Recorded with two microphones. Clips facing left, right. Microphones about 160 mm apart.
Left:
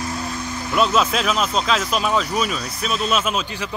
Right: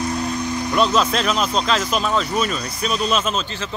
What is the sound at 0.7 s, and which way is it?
Speech, 5° left (ahead or behind).